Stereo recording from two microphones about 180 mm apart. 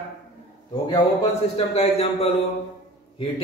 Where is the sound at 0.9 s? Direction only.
25° left (ahead or behind).